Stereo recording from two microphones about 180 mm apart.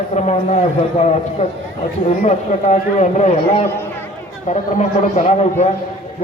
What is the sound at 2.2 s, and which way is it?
A man's voice, 40° left (ahead or behind).